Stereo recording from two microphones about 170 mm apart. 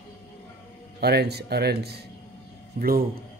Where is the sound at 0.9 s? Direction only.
70° right (ahead or behind).